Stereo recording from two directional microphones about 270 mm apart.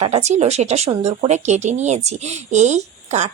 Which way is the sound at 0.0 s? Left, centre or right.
Right.